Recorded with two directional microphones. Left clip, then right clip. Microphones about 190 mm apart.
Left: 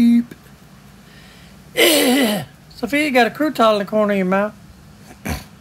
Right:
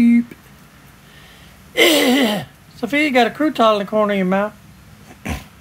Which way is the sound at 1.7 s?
10° left (ahead or behind).